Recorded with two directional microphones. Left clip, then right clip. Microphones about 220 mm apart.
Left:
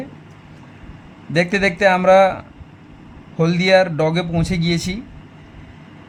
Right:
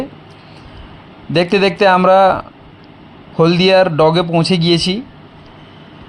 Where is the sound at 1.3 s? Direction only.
10° right (ahead or behind).